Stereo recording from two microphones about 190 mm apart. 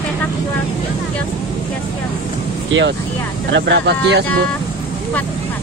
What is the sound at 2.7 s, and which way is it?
Speech, 75° right (ahead or behind).